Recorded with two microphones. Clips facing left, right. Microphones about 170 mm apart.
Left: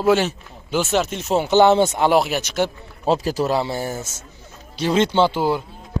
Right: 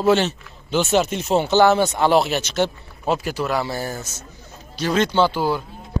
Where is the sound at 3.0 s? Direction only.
30° left (ahead or behind).